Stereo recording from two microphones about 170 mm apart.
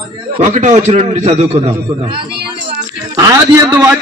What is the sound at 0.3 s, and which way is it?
A man's voice, 45° right (ahead or behind).